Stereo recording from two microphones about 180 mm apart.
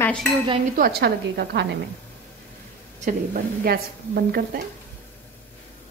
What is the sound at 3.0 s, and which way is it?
A woman's voice, 55° right (ahead or behind).